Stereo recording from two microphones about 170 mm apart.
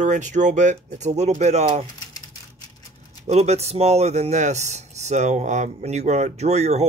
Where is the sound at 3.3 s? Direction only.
40° right (ahead or behind).